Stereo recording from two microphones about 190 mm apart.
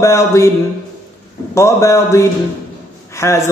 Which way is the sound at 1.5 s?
15° left (ahead or behind).